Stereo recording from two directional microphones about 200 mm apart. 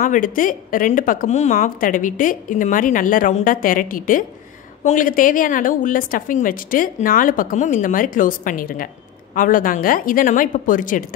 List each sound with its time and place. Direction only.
0.0 s a woman's voice: 40° left (ahead or behind)